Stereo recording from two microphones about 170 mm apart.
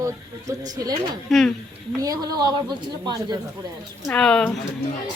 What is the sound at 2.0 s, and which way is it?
A woman's voice, 20° right (ahead or behind).